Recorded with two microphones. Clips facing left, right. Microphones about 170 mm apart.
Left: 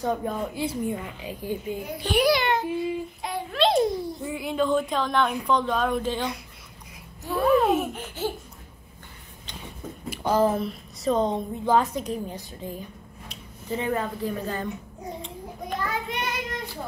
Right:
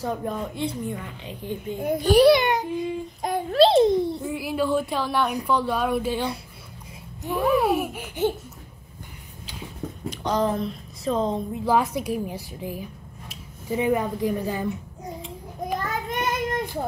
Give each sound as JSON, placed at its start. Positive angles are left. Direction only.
{"t": 0.0, "sound": "a woman's voice", "side_deg": 0}
{"t": 1.8, "sound": "a child's voice", "side_deg": -50}
{"t": 2.2, "sound": "a child's voice", "side_deg": -20}
{"t": 3.2, "sound": "a sound", "side_deg": -45}
{"t": 3.6, "sound": "a child's voice", "side_deg": -25}
{"t": 4.2, "sound": "a sound", "side_deg": 0}
{"t": 7.2, "sound": "a sound", "side_deg": -15}
{"t": 10.0, "sound": "a woman's voice", "side_deg": 5}
{"t": 16.1, "sound": "child singing", "side_deg": -50}